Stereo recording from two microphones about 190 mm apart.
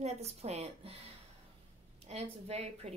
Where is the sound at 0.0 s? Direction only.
35° right (ahead or behind).